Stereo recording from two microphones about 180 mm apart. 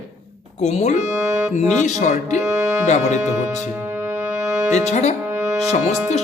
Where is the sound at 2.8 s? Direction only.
40° left (ahead or behind).